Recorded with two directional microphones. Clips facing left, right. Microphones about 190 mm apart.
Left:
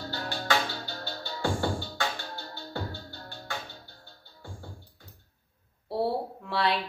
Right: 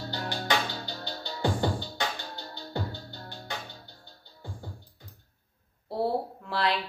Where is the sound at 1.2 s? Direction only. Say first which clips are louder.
Right 1 dB; 15° right (ahead or behind).